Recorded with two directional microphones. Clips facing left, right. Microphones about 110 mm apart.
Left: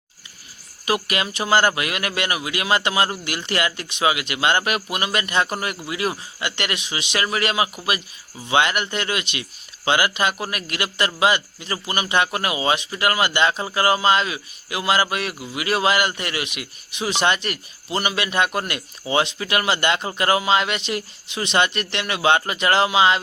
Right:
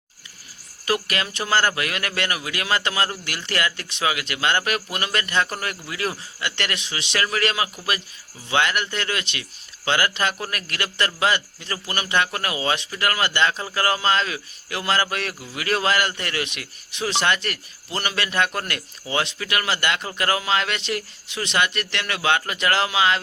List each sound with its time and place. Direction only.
0.9 s a man's voice: 15° left (ahead or behind)